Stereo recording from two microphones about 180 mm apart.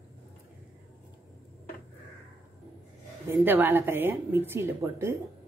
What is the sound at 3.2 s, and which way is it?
A woman's voice, 10° right (ahead or behind).